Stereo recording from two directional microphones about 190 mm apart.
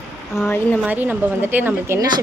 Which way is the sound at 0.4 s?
10° left (ahead or behind).